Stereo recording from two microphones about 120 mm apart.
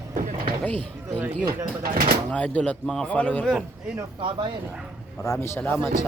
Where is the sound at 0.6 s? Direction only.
10° left (ahead or behind).